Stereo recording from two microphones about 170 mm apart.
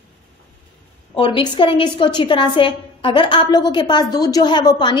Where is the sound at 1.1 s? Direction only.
30° left (ahead or behind).